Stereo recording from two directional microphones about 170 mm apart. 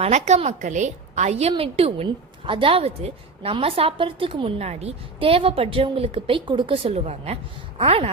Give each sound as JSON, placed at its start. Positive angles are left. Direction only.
{"t": 0.0, "sound": "a woman's voice", "side_deg": -40}